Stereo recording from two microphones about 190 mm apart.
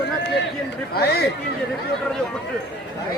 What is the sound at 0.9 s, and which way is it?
Speech, 55° left (ahead or behind).